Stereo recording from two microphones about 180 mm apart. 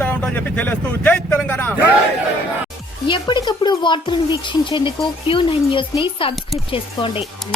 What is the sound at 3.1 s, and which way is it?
Speech, 25° left (ahead or behind).